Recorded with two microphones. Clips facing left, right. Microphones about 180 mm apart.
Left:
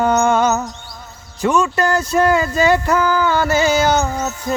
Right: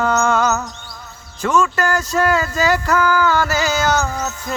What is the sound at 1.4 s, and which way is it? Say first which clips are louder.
Speech: left 1 dB; 20° left (ahead or behind).